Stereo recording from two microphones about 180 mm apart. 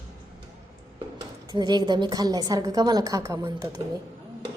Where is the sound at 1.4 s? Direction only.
20° right (ahead or behind).